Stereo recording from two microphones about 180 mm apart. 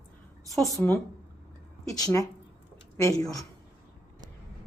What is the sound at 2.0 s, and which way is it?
A woman's voice, 15° left (ahead or behind).